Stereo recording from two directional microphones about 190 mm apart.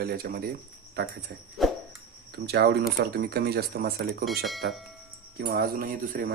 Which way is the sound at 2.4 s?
55° right (ahead or behind).